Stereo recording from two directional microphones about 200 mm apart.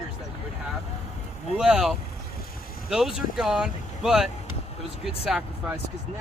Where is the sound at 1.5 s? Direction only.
5° right (ahead or behind).